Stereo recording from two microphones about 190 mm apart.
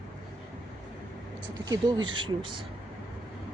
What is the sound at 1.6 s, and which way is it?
Speech, 20° right (ahead or behind).